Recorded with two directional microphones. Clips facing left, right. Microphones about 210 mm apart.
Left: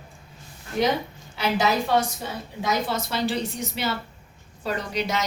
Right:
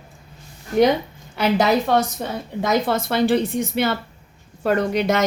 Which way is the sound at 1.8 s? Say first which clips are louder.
Right 4 dB; 55° right (ahead or behind).